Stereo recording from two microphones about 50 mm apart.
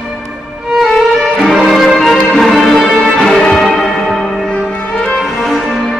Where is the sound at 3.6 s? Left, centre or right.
Centre.